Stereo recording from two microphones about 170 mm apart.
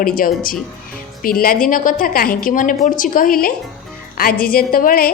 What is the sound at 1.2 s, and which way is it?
A woman's voice, 55° left (ahead or behind).